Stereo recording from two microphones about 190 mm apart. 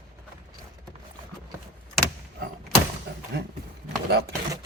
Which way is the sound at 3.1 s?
60° right (ahead or behind).